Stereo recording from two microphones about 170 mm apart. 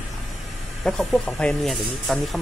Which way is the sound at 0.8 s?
Centre (ahead or behind).